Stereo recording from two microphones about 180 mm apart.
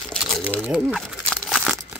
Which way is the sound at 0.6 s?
5° right (ahead or behind).